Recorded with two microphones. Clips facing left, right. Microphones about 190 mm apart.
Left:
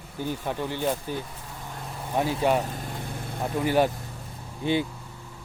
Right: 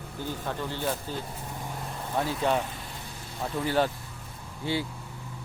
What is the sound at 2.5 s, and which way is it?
Vehicle, 45° left (ahead or behind).